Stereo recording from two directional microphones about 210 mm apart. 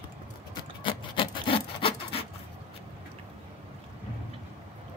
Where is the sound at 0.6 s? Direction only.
25° left (ahead or behind).